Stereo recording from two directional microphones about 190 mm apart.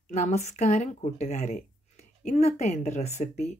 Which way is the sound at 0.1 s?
35° left (ahead or behind).